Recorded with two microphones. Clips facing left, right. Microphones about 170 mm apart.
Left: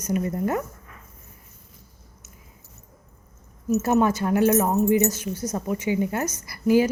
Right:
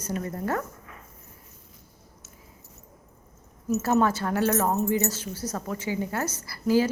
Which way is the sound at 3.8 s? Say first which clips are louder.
Left 2 dB; 15° left (ahead or behind).